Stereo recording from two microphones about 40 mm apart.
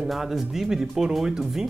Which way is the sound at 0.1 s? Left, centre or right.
Centre.